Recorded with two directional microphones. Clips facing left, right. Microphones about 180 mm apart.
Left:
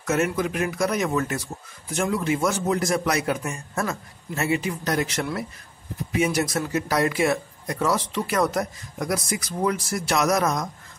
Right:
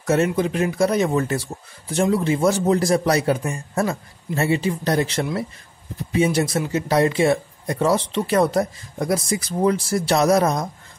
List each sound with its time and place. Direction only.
0.0 s speech: 30° right (ahead or behind)